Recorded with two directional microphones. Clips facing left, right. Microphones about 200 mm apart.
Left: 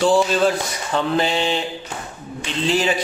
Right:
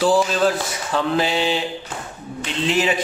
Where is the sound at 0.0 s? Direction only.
Centre (ahead or behind).